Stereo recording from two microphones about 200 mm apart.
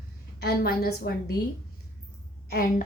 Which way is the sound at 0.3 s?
50° left (ahead or behind).